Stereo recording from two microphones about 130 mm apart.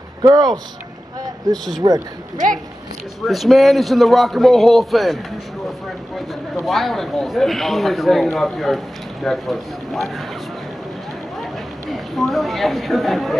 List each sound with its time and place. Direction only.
0.2 s speech: 30° right (ahead or behind)
3.3 s a man's voice: centre (ahead or behind)
11.9 s a man's voice: centre (ahead or behind)